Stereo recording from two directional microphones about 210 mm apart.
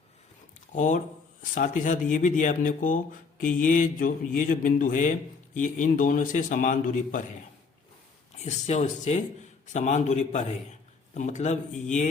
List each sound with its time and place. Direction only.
0.7 s speech: 35° left (ahead or behind)
8.4 s speech: 35° left (ahead or behind)